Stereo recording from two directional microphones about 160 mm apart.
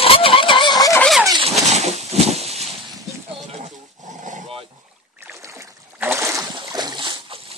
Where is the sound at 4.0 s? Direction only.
50° right (ahead or behind).